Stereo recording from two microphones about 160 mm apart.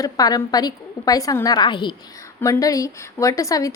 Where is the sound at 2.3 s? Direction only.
15° left (ahead or behind).